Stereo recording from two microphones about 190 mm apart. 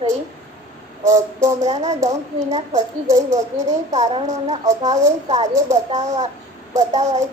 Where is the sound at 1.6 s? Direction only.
35° right (ahead or behind).